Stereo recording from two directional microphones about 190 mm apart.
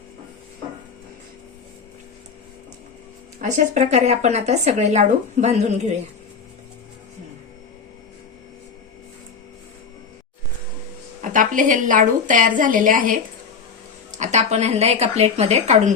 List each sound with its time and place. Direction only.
3.3 s speech: 40° right (ahead or behind)
11.2 s a woman's voice: 45° right (ahead or behind)